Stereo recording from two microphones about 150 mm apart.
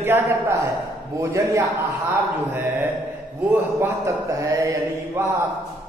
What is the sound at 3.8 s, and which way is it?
A man's voice, 15° right (ahead or behind).